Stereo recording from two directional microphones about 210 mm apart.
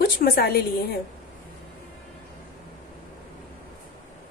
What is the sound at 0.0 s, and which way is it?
Speech, 45° left (ahead or behind).